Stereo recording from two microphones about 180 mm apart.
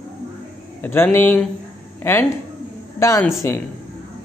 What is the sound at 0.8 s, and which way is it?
Speech, 10° left (ahead or behind).